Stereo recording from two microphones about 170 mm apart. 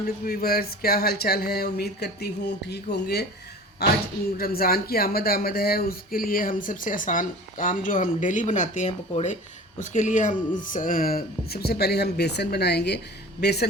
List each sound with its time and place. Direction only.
0.3 s speech: 65° left (ahead or behind)